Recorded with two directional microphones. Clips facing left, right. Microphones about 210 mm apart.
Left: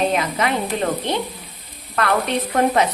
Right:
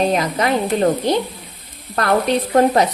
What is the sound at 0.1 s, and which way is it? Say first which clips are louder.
Speech: right 3 dB; 40° right (ahead or behind).